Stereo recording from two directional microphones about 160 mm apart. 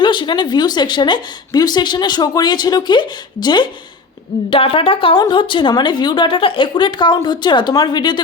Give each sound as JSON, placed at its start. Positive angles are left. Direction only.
{"t": 0.0, "sound": "speech", "side_deg": 30}